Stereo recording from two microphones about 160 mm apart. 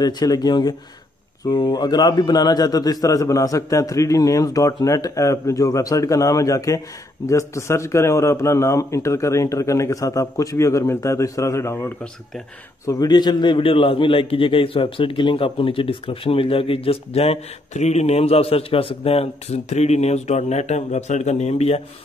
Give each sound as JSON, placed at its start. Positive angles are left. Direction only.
{"t": 0.0, "sound": "a man's voice", "side_deg": 25}